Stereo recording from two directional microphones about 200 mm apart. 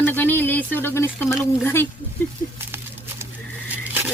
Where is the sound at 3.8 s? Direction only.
10° right (ahead or behind).